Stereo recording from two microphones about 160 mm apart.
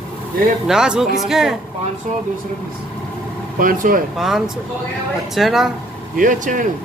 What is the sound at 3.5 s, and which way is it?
Speech, 60° right (ahead or behind).